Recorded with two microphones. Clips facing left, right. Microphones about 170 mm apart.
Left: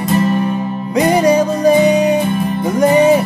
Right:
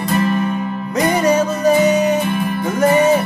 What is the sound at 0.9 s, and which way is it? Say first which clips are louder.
Music: left 3 dB; 10° left (ahead or behind).